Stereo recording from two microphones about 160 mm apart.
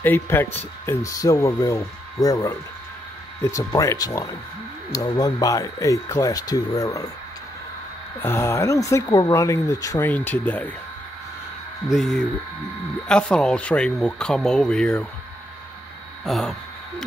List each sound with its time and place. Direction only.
0.0 s speech: 10° left (ahead or behind)
3.5 s speech: 20° left (ahead or behind)
8.2 s speech: 15° left (ahead or behind)
11.9 s speech: centre (ahead or behind)
16.3 s speech: centre (ahead or behind)